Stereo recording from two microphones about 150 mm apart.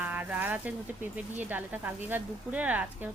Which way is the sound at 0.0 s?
10° right (ahead or behind).